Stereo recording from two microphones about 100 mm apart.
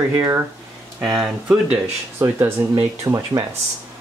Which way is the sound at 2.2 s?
30° right (ahead or behind).